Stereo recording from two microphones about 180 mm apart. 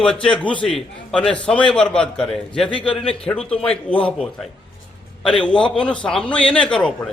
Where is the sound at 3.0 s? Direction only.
5° left (ahead or behind).